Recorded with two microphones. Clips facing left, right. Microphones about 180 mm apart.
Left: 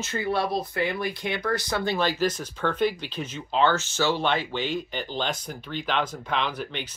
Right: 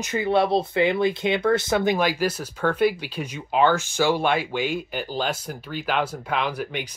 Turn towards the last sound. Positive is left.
turn(degrees=-10)  # may be behind; listen again after turning